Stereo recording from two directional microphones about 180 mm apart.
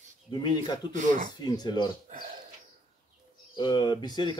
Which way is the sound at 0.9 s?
45° right (ahead or behind).